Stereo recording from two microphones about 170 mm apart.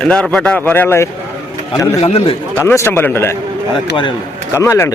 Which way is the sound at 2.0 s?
35° left (ahead or behind).